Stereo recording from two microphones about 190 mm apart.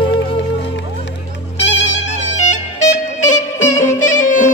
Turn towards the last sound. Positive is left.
turn(degrees=40)  # may be behind; listen again after turning